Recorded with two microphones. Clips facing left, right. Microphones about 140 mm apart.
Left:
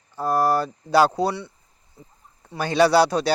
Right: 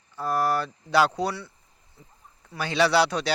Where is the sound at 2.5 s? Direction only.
45° left (ahead or behind).